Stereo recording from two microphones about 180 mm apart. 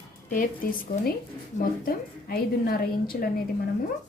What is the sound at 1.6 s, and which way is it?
A woman's voice, 55° left (ahead or behind).